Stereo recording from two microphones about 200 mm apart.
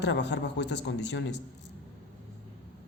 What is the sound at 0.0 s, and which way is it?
A man's voice, 60° left (ahead or behind).